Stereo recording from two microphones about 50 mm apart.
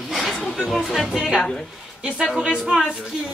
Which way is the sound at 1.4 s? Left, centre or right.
Centre.